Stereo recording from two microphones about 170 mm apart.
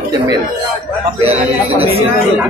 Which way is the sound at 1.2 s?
35° right (ahead or behind).